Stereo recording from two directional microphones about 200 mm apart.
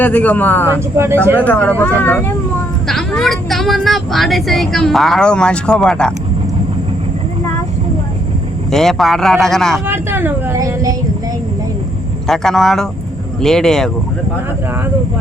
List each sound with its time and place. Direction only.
0.0 s speech: 10° left (ahead or behind)
8.7 s speech: centre (ahead or behind)
9.8 s speech: 10° right (ahead or behind)
12.3 s speech: centre (ahead or behind)